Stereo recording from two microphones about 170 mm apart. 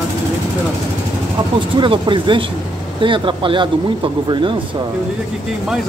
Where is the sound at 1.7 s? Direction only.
30° right (ahead or behind).